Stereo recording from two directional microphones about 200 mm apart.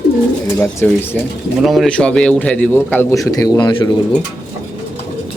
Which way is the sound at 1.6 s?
Centre (ahead or behind).